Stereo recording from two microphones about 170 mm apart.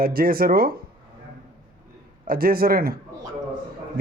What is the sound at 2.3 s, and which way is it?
Speech, 60° right (ahead or behind).